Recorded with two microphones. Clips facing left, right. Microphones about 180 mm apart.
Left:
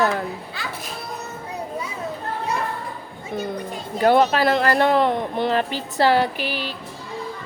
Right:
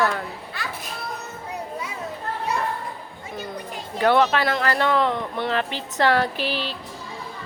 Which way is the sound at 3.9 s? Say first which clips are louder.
Left 2 dB; 40° left (ahead or behind).